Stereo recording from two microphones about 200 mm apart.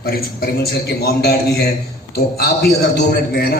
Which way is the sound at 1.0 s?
55° left (ahead or behind).